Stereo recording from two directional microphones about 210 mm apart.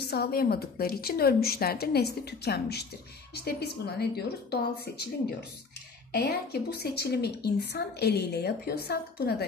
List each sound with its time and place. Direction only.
0.1 s a woman's voice: 50° left (ahead or behind)